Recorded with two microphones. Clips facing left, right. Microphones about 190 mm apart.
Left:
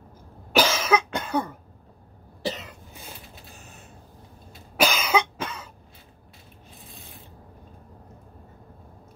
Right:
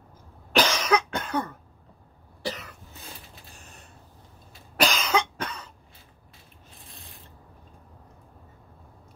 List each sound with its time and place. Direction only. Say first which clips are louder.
0.5 s cough: left 1 dB; 5° left (ahead or behind)
2.4 s cough: left 3 dB; 20° left (ahead or behind)
3.5 s computer keyboard: left 3 dB; centre (ahead or behind)
4.7 s cough: left 2 dB; 5° left (ahead or behind)
6.8 s a sound: left 3 dB; centre (ahead or behind)